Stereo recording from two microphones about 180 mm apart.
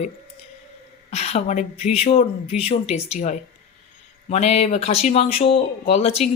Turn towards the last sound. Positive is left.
turn(degrees=35)  # may be behind; listen again after turning